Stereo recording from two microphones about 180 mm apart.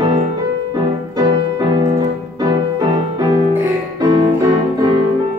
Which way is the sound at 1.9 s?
25° right (ahead or behind).